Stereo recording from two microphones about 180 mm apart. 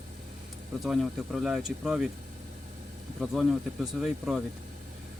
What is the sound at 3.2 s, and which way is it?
Speech, 5° right (ahead or behind).